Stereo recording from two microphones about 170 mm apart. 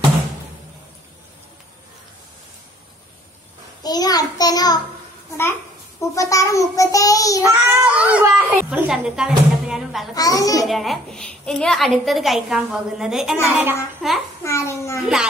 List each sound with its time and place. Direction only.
3.8 s a sound: 20° left (ahead or behind)
5.4 s a child's voice: 15° left (ahead or behind)
7.4 s a child's voice: 10° right (ahead or behind)
10.1 s a child's voice: 20° left (ahead or behind)
10.6 s a woman's voice: centre (ahead or behind)
14.4 s a child's voice: 15° left (ahead or behind)